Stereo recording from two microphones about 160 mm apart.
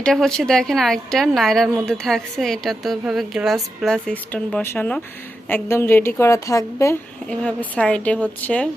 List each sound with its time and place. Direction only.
0.0 s a woman's voice: 5° left (ahead or behind)
7.3 s a woman's voice: 10° left (ahead or behind)